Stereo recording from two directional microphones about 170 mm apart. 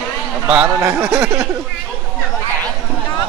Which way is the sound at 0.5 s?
5° right (ahead or behind).